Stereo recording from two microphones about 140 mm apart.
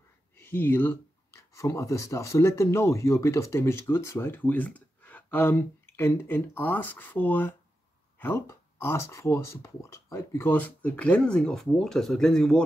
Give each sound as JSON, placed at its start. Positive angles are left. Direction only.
{"t": 0.4, "sound": "speech", "side_deg": 15}